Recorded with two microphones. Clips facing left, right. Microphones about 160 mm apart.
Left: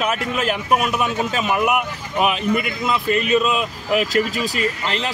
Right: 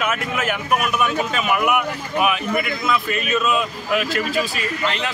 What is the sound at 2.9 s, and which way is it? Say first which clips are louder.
A man's voice: left 5 dB; 30° left (ahead or behind).